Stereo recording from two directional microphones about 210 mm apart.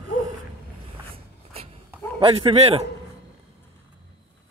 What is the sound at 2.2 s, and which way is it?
Speech, 25° right (ahead or behind).